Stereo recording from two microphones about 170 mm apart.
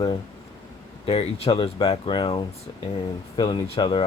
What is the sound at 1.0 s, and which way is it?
Speech, 35° left (ahead or behind).